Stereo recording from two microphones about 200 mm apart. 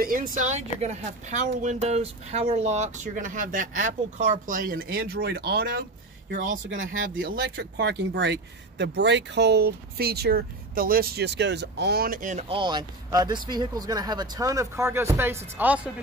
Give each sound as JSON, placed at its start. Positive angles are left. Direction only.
{"t": 0.0, "sound": "speech", "side_deg": -45}
{"t": 6.3, "sound": "a woman's voice", "side_deg": -45}